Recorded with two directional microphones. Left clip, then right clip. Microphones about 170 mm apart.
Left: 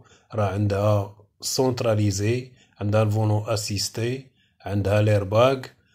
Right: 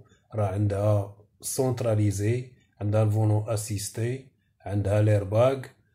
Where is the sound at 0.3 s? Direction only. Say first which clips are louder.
Left 4 dB; 25° left (ahead or behind).